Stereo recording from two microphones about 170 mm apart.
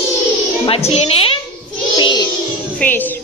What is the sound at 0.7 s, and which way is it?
Speech, 35° left (ahead or behind).